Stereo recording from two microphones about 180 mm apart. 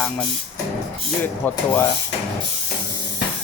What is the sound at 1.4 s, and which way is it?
Speech, 10° left (ahead or behind).